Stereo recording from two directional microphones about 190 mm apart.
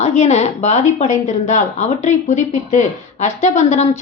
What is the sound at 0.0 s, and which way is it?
A woman's voice, 35° left (ahead or behind).